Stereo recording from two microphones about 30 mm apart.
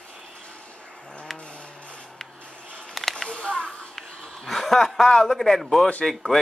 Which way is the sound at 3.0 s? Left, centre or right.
Centre.